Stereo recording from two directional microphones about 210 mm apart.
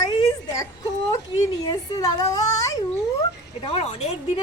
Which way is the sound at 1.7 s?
20° left (ahead or behind).